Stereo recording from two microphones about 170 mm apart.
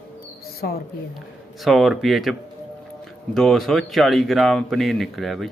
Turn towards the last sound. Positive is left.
turn(degrees=0)  # may be behind; listen again after turning